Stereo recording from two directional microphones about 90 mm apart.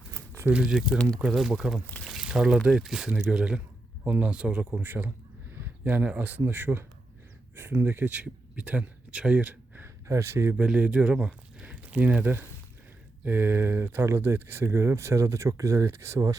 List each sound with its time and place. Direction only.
0.1 s a sound: 25° right (ahead or behind)
0.5 s a man's voice: 5° right (ahead or behind); by 10.5 s 30° right (ahead or behind)
10.6 s speech: 15° right (ahead or behind); by 16.4 s 35° right (ahead or behind)